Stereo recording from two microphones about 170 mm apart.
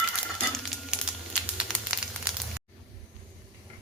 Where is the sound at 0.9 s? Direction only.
5° right (ahead or behind).